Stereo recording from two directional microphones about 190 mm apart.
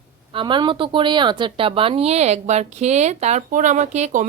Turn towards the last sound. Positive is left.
turn(degrees=-40)  # may be behind; listen again after turning